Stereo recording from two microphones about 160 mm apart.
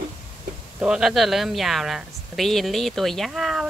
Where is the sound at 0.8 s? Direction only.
5° right (ahead or behind).